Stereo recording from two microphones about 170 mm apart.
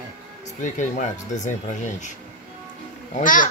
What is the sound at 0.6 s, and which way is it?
Speech, 50° left (ahead or behind).